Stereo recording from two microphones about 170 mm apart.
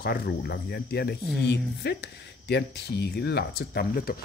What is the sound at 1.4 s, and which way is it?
Speech, 85° left.